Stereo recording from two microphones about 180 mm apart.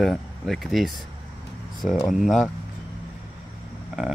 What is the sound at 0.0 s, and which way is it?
Speech, centre (ahead or behind).